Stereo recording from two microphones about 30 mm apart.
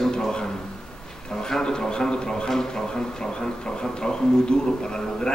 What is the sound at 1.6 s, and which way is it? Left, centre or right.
A man's voice, left.